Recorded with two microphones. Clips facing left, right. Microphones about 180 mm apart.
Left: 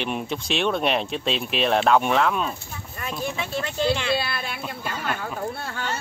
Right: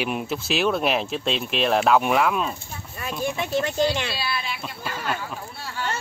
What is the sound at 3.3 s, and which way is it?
Speech, 15° right (ahead or behind).